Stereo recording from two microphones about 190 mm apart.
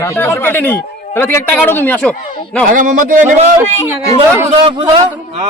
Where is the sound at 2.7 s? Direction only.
45° right (ahead or behind).